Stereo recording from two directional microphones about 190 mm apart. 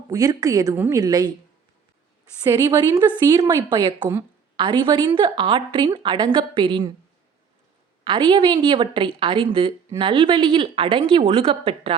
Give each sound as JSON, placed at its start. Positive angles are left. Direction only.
{"t": 0.1, "sound": "a woman's voice", "side_deg": -20}
{"t": 2.4, "sound": "a woman's voice", "side_deg": -20}
{"t": 8.0, "sound": "a woman's voice", "side_deg": -25}